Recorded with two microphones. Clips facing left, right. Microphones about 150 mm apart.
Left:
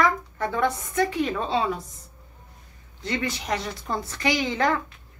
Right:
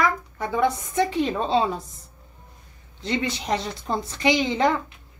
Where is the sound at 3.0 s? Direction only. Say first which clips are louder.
Right 2 dB; 20° right (ahead or behind).